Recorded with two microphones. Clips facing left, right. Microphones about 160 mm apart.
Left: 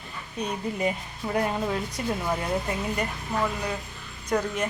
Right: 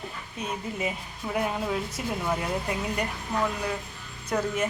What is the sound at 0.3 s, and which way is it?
Speech, 5° right (ahead or behind).